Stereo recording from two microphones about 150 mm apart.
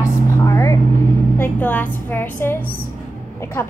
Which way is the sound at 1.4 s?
10° left (ahead or behind).